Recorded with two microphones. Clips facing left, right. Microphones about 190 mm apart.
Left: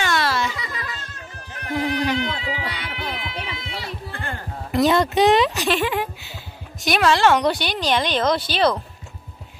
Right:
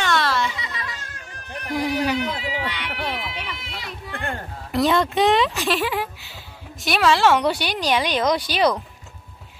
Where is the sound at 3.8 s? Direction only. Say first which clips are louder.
Left 3 dB; 30° left (ahead or behind).